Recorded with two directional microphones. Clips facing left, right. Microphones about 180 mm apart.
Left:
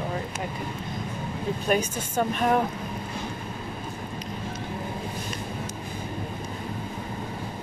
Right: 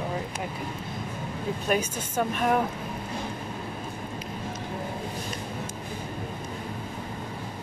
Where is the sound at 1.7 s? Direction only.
5° right (ahead or behind).